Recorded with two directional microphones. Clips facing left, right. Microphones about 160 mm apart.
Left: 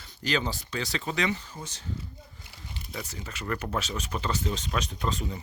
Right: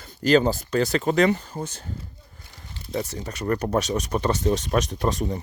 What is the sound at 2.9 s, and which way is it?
Speech, 40° right (ahead or behind).